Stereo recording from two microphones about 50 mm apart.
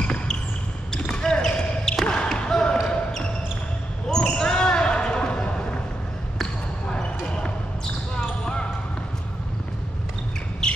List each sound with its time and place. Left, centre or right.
0.0 s basketball bounce: centre
4.1 s basketball bounce: centre
6.9 s basketball bounce: centre
10.6 s a sound: centre